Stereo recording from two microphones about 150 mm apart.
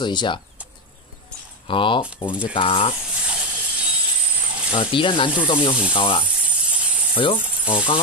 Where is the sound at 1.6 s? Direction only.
35° left (ahead or behind).